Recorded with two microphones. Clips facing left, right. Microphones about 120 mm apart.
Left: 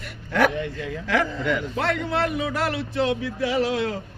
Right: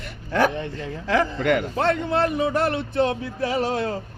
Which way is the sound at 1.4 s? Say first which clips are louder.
Right 4 dB; 60° right (ahead or behind).